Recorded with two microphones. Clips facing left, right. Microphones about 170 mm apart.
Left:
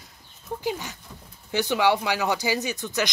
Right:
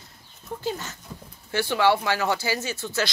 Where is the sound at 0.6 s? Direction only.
15° left (ahead or behind).